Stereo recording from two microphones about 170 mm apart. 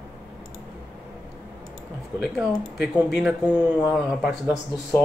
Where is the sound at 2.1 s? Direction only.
5° right (ahead or behind).